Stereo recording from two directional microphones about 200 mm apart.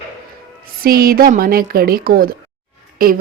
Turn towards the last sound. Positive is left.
turn(degrees=-45)  # may be behind; listen again after turning